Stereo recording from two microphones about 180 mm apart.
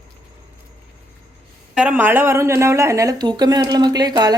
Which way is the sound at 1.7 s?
10° right (ahead or behind).